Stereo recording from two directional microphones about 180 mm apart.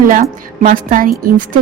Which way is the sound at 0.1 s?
50° right (ahead or behind).